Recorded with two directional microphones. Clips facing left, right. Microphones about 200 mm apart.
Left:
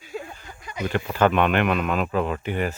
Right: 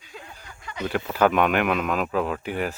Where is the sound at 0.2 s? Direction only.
20° left (ahead or behind).